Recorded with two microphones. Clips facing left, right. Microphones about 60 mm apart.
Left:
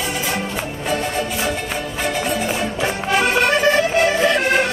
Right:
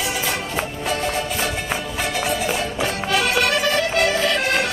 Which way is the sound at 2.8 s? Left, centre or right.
Left.